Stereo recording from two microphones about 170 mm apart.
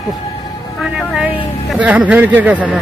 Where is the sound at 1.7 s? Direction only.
5° right (ahead or behind).